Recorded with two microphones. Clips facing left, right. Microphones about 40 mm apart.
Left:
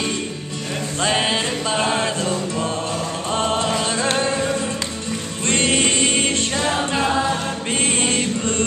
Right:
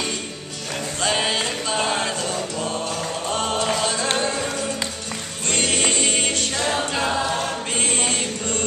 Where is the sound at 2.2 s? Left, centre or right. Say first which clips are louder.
Left 3 dB; left.